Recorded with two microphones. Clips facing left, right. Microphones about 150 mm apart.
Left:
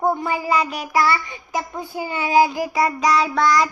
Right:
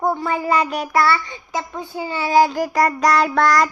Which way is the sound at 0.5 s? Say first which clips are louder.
Right 2 dB; 40° right (ahead or behind).